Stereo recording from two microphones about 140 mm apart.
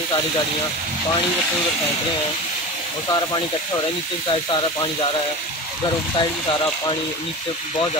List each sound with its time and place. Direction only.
6.1 s speech: 35° left (ahead or behind)